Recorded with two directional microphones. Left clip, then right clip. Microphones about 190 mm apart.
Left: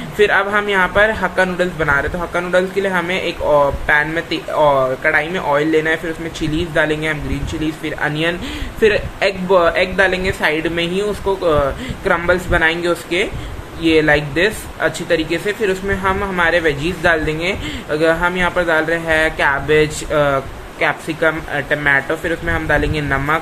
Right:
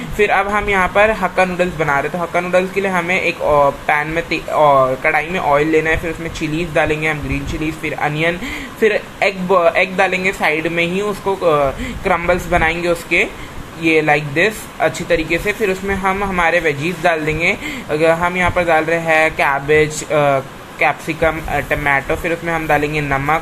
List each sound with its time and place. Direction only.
0.2 s a man's voice: 10° right (ahead or behind)